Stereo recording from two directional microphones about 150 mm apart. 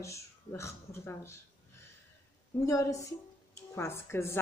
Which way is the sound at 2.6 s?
20° left (ahead or behind).